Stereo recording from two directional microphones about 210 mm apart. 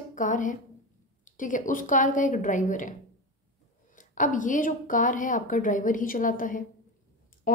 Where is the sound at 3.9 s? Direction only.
40° left (ahead or behind).